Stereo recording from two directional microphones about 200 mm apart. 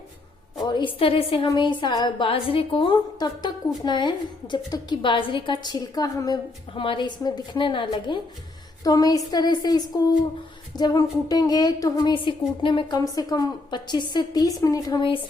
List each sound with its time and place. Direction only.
0.6 s a woman's voice: 25° left (ahead or behind)